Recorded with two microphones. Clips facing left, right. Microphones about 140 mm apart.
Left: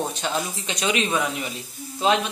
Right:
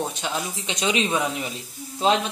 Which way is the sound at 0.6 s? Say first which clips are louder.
Right 2 dB; 25° right (ahead or behind).